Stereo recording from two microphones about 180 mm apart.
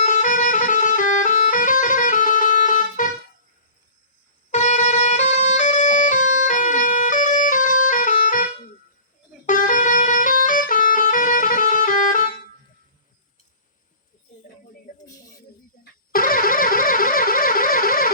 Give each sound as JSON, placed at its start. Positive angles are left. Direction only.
{"t": 0.0, "sound": "music", "side_deg": 45}
{"t": 4.5, "sound": "music", "side_deg": 40}
{"t": 9.5, "sound": "music", "side_deg": 45}
{"t": 14.9, "sound": "a sound", "side_deg": 50}
{"t": 15.8, "sound": "music", "side_deg": 55}